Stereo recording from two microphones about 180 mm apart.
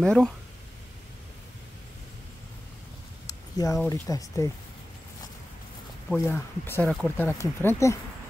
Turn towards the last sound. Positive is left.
turn(degrees=15)  # may be behind; listen again after turning